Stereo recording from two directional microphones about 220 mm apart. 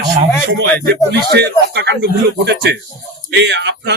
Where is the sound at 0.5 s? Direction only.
55° right (ahead or behind).